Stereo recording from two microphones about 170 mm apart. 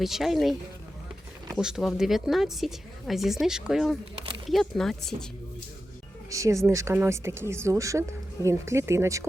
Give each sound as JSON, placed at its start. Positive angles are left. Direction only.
{"t": 0.0, "sound": "speech", "side_deg": 0}
{"t": 1.5, "sound": "speech", "side_deg": 0}
{"t": 6.3, "sound": "speech", "side_deg": -20}